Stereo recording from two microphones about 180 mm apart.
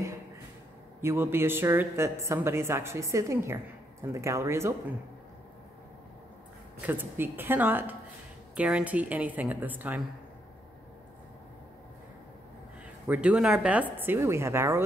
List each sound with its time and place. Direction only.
1.0 s speech: 15° right (ahead or behind)
6.9 s speech: 10° right (ahead or behind)
13.0 s speech: 10° right (ahead or behind)